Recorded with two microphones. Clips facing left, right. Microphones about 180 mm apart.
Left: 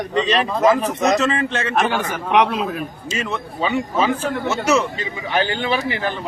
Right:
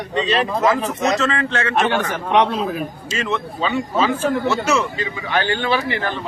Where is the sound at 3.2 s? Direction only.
15° left (ahead or behind).